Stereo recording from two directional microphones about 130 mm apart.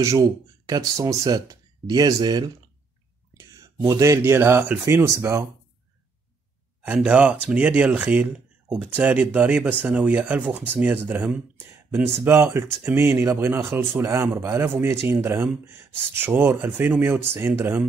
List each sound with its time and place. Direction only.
0.7 s speech: 25° right (ahead or behind)
3.8 s speech: 25° right (ahead or behind)
6.8 s speech: 10° right (ahead or behind)
11.9 s speech: 20° right (ahead or behind)